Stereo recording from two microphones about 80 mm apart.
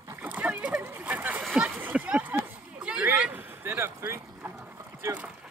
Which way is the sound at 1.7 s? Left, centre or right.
Right.